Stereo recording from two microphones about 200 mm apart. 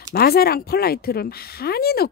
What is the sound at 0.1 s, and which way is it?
Speech, 50° left (ahead or behind).